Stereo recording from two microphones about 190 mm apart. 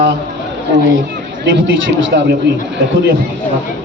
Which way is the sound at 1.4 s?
75° right (ahead or behind).